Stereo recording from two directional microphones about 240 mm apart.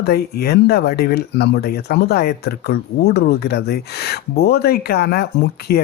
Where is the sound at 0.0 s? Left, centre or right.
Left.